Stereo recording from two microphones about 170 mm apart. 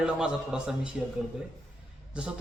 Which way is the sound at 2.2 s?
5° right (ahead or behind).